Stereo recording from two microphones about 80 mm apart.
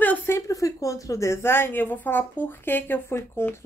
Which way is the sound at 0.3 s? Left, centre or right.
Left.